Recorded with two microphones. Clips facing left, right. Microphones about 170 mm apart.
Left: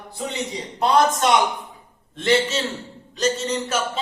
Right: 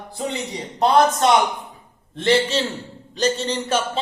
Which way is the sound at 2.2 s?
30° right (ahead or behind).